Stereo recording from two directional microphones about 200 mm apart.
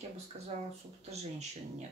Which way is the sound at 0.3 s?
30° right (ahead or behind).